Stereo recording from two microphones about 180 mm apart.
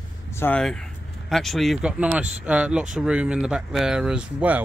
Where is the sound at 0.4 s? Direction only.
5° left (ahead or behind).